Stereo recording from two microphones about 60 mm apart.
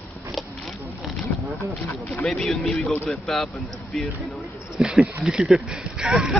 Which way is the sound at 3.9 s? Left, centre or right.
Centre.